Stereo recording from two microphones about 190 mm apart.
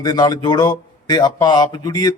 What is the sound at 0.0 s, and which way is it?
Speech, 20° left (ahead or behind).